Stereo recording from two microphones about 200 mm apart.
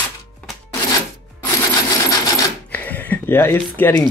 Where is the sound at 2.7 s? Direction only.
10° left (ahead or behind).